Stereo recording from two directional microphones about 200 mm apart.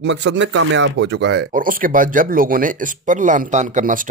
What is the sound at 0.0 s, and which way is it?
Speech, 60° right (ahead or behind).